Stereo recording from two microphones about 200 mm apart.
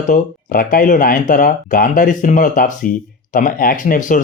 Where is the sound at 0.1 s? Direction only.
45° left (ahead or behind).